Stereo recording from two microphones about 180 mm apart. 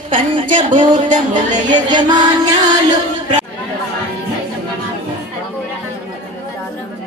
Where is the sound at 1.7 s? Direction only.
25° right (ahead or behind).